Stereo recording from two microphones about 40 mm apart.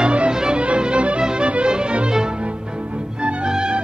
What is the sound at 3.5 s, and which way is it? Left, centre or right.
Music, right.